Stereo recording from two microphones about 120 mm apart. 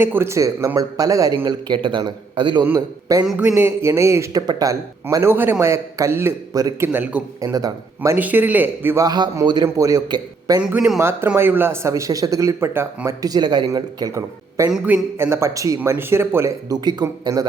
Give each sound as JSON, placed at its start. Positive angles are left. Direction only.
{"t": 0.0, "sound": "speech", "side_deg": -20}
{"t": 2.7, "sound": "speech", "side_deg": -30}
{"t": 3.3, "sound": "speech", "side_deg": -15}
{"t": 5.1, "sound": "speech", "side_deg": -20}
{"t": 7.4, "sound": "speech", "side_deg": -30}
{"t": 8.1, "sound": "speech", "side_deg": -15}
{"t": 9.0, "sound": "speech", "side_deg": -35}
{"t": 10.6, "sound": "speech", "side_deg": -10}
{"t": 11.3, "sound": "speech", "side_deg": -20}
{"t": 13.1, "sound": "speech", "side_deg": -30}
{"t": 14.7, "sound": "speech", "side_deg": -10}
{"t": 15.2, "sound": "speech", "side_deg": -20}